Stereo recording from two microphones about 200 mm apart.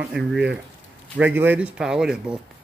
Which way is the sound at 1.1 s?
10° right (ahead or behind).